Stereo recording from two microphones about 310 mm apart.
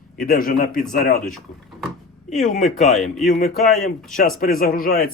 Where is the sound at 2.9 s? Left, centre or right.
Centre.